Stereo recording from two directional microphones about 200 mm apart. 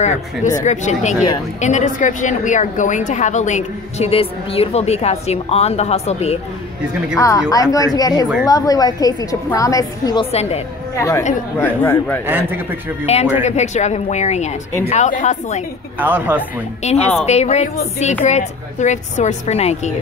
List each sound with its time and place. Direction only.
0.0 s a woman's voice: 35° left (ahead or behind)
7.2 s a woman's voice: 15° left (ahead or behind)
10.3 s a woman's voice: 30° left (ahead or behind)
11.0 s a woman's voice: 15° left (ahead or behind)
12.3 s speech: 10° right (ahead or behind)
13.0 s a woman's voice: 30° left (ahead or behind)
16.0 s speech: 10° right (ahead or behind)
16.8 s a woman's voice: 30° left (ahead or behind)